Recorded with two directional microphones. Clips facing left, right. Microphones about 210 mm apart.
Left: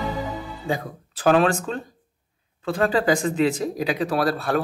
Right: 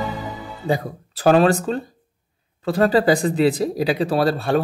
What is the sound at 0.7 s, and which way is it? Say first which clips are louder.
A man's voice: right 5 dB; 35° right (ahead or behind).